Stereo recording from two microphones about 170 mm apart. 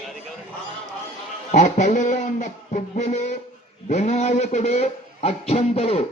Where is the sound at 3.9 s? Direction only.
45° left (ahead or behind).